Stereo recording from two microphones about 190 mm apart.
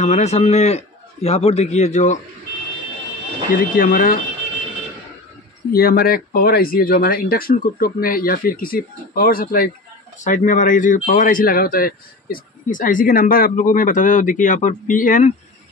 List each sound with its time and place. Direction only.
0.0 s a man's voice: 35° left (ahead or behind)
3.5 s speech: 50° left (ahead or behind)
5.7 s speech: 50° left (ahead or behind)